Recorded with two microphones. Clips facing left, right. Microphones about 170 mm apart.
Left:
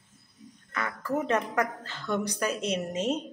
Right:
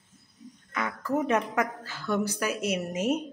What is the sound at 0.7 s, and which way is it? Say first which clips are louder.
A woman's voice: right 2 dB; 10° right (ahead or behind).